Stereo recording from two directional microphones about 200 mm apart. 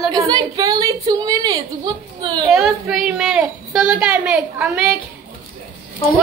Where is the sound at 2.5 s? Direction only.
Centre (ahead or behind).